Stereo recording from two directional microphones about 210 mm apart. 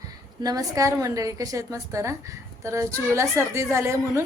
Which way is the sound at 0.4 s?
15° right (ahead or behind).